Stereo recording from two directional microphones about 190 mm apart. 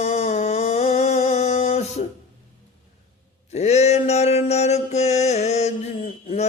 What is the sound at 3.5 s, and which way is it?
Mantra, 35° left (ahead or behind).